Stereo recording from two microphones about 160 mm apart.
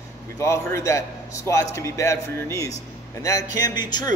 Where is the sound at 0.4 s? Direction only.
15° left (ahead or behind).